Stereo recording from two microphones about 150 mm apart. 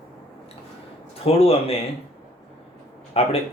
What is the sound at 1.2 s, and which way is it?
Speech, 40° left (ahead or behind).